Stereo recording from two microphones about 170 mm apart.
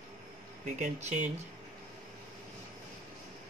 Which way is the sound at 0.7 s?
45° right (ahead or behind).